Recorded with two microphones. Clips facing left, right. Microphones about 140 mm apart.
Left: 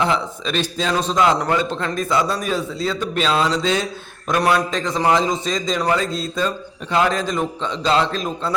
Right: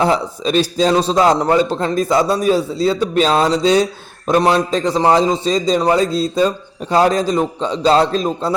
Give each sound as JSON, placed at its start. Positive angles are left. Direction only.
{"t": 0.0, "sound": "a man's voice", "side_deg": -40}